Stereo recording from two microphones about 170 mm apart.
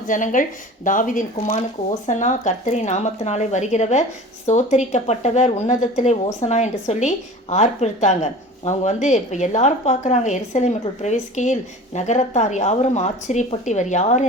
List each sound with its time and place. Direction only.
0.1 s speech: 50° left (ahead or behind)